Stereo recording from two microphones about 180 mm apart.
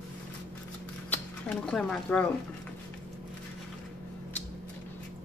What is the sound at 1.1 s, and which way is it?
Speech, 5° left (ahead or behind).